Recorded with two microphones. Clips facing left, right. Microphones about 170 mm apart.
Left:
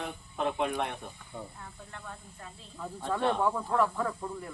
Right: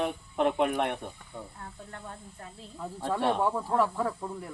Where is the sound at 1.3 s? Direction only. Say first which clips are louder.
Left 2 dB; 10° right (ahead or behind).